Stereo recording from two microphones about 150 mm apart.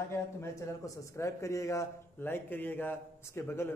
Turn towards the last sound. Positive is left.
turn(degrees=15)  # may be behind; listen again after turning